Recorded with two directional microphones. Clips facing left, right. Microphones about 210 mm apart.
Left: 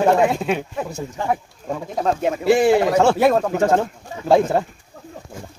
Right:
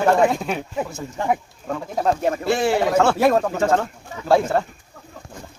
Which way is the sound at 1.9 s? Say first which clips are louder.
Even; centre (ahead or behind).